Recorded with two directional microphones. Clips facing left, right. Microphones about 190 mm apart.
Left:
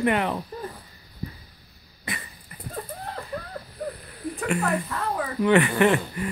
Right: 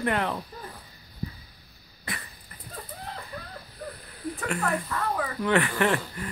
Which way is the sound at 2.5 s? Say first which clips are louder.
Left 8 dB; 10° left (ahead or behind).